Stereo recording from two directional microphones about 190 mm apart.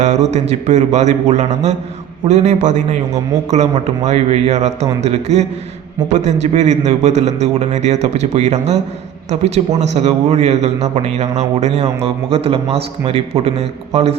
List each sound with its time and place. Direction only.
0.0 s speech: 35° right (ahead or behind)